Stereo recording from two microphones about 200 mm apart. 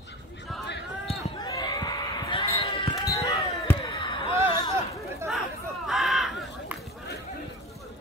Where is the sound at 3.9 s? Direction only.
25° left (ahead or behind).